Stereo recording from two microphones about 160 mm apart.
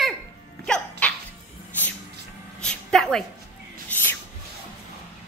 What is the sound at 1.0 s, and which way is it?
Music, 10° left (ahead or behind).